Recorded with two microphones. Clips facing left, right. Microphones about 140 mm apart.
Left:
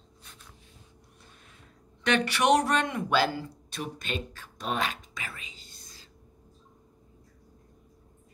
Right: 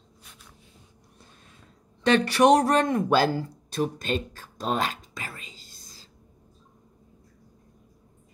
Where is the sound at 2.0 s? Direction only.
35° right (ahead or behind).